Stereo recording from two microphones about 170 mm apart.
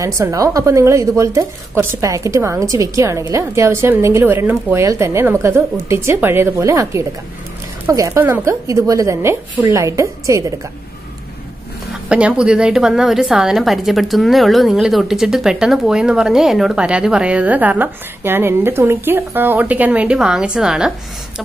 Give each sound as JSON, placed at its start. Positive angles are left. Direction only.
{"t": 0.0, "sound": "speech", "side_deg": -20}
{"t": 12.1, "sound": "a woman's voice", "side_deg": -5}